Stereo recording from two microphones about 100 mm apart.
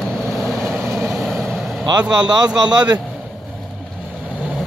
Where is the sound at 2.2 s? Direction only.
40° right (ahead or behind).